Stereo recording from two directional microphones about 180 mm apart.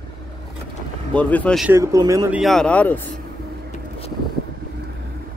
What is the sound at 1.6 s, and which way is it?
Speech, 15° right (ahead or behind).